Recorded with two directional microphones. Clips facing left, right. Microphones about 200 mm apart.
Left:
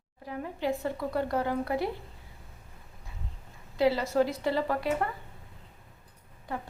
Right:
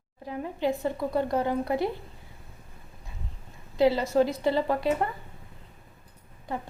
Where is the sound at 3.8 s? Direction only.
20° right (ahead or behind).